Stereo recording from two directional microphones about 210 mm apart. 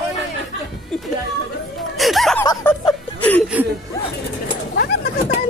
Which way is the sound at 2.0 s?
Centre (ahead or behind).